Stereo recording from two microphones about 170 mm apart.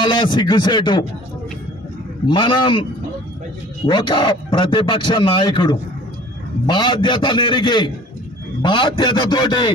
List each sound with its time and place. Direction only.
0.0 s a man's voice: 25° left (ahead or behind)
2.2 s a man's voice: 30° left (ahead or behind)